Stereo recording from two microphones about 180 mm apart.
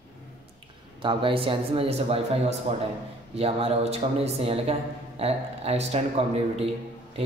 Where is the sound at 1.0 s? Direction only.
30° right (ahead or behind).